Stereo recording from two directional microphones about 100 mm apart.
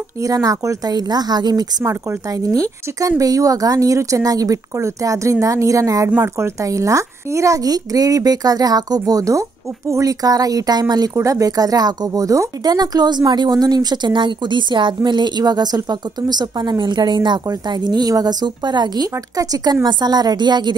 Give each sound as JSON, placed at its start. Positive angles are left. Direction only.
{"t": 0.2, "sound": "speech", "side_deg": -35}
{"t": 6.0, "sound": "speech", "side_deg": -20}